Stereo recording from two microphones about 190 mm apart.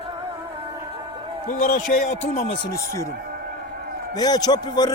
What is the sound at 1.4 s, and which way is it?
Speech, 50° left (ahead or behind).